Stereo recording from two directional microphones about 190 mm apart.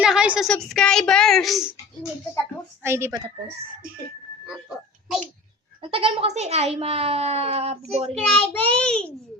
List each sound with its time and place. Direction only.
0.0 s a child's voice: 5° right (ahead or behind)
2.8 s a woman's voice: 15° right (ahead or behind)
5.8 s speech: 30° right (ahead or behind)
8.1 s a child's voice: 5° left (ahead or behind)